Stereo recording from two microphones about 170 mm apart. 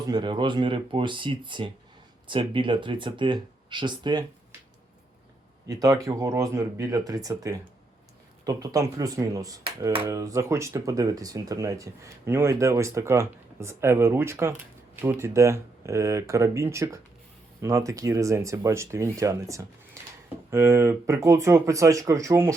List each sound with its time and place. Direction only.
0.1 s speech: 30° right (ahead or behind)
5.6 s speech: 20° right (ahead or behind)